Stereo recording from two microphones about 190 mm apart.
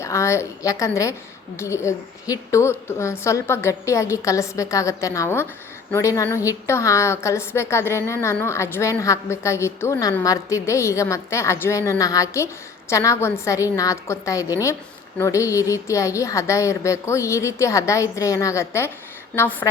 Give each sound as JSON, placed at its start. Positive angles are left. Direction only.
{"t": 0.0, "sound": "a woman's voice", "side_deg": 15}